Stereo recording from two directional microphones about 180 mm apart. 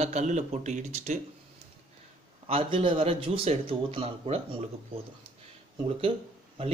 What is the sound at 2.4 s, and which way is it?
Speech, 30° right (ahead or behind).